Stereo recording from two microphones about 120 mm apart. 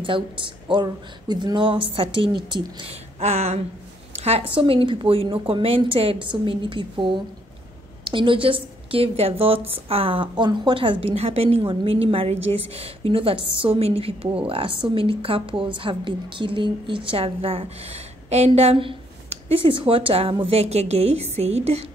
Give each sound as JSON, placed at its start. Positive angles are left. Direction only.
{"t": 0.0, "sound": "a woman's voice", "side_deg": -45}
{"t": 3.2, "sound": "a woman's voice", "side_deg": -65}